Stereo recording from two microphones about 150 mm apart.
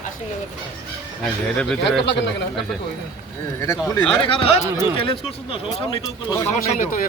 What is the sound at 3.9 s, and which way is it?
Speech, 30° left (ahead or behind).